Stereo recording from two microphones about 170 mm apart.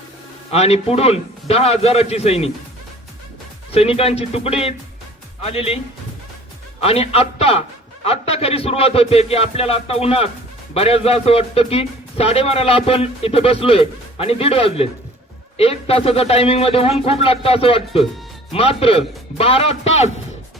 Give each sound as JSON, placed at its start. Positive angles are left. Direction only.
{"t": 0.5, "sound": "a man's voice", "side_deg": 35}
{"t": 3.7, "sound": "a man's voice", "side_deg": 35}
{"t": 6.8, "sound": "a man's voice", "side_deg": 35}